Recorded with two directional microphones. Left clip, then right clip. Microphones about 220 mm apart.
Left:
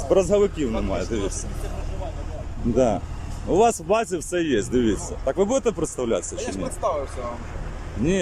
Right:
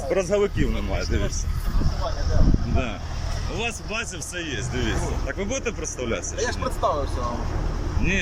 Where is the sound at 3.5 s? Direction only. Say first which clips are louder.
Left 11 dB; 35° left (ahead or behind).